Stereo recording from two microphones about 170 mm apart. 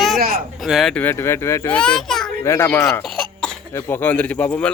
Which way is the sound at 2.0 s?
5° left (ahead or behind).